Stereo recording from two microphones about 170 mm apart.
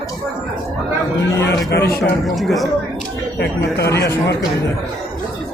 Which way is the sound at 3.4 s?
70° left (ahead or behind).